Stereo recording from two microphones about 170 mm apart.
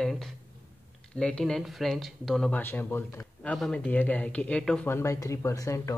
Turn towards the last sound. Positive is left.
turn(degrees=20)  # may be behind; listen again after turning